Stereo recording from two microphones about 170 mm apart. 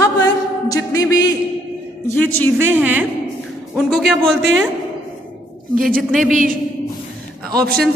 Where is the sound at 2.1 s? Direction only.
10° left (ahead or behind).